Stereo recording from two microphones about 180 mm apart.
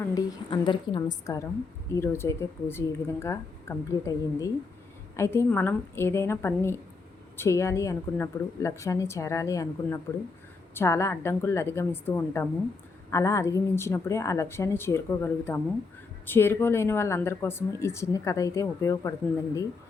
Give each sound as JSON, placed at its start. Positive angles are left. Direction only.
{"t": 0.0, "sound": "a woman's voice", "side_deg": 20}